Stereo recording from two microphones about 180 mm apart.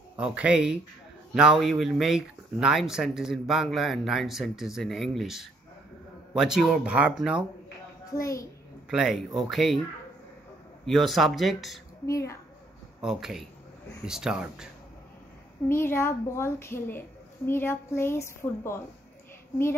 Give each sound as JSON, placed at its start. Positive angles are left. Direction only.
{"t": 0.2, "sound": "speech", "side_deg": -5}
{"t": 8.1, "sound": "a woman's voice", "side_deg": 20}
{"t": 8.9, "sound": "speech", "side_deg": 0}
{"t": 10.9, "sound": "speech", "side_deg": 0}
{"t": 12.1, "sound": "a woman's voice", "side_deg": 15}
{"t": 13.0, "sound": "speech", "side_deg": 0}
{"t": 15.7, "sound": "a woman's voice", "side_deg": 15}